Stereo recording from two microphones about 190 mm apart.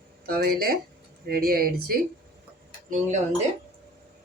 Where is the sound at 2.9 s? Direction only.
40° right (ahead or behind).